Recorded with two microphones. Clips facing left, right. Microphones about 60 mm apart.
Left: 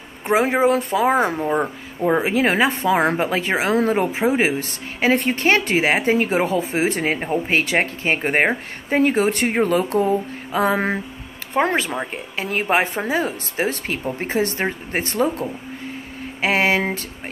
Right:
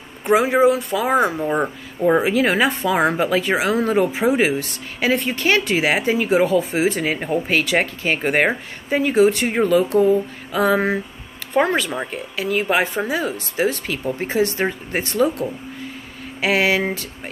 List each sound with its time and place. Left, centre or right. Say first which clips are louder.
0.3 s speech: right 2 dB; left
1.0 s speech: right 2 dB; left
1.5 s speech: even; centre
2.2 s speech: even; left
8.9 s speech: right 2 dB; left